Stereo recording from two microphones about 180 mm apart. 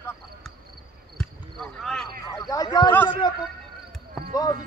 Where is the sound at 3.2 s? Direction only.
25° left (ahead or behind).